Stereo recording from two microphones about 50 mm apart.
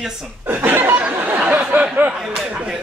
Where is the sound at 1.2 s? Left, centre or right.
Right.